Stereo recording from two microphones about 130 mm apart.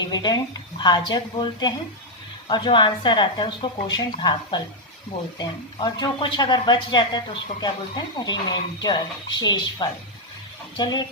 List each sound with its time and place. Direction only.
0.0 s speech: 30° left (ahead or behind)